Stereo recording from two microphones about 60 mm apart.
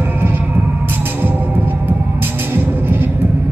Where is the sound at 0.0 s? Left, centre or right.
Right.